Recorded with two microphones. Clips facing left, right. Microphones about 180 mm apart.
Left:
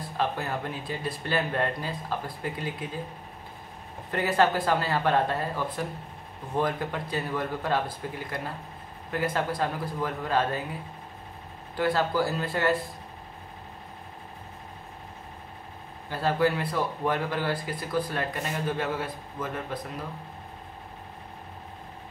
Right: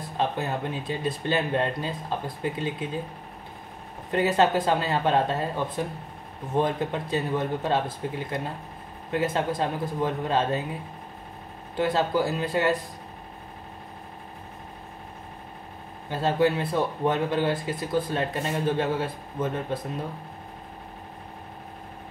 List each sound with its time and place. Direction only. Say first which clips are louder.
0.2 s speech: right 2 dB; 20° right (ahead or behind)
4.1 s speech: right 2 dB; 20° right (ahead or behind)
11.7 s speech: right 2 dB; 20° right (ahead or behind)
16.1 s speech: right 2 dB; 25° right (ahead or behind)